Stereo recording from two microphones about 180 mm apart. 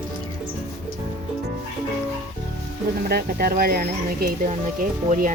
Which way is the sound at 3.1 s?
60° right (ahead or behind).